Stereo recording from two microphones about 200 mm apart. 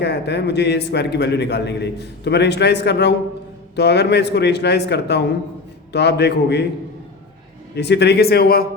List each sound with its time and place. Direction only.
0.0 s a man's voice: 55° left (ahead or behind)
7.8 s speech: 55° left (ahead or behind)